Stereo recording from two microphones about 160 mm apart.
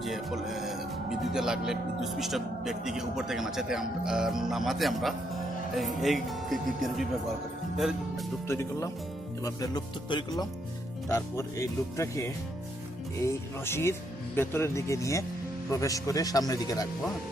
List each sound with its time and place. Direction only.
0.0 s music: centre (ahead or behind)
1.3 s speech: 5° right (ahead or behind)
8.4 s speech: 15° left (ahead or behind)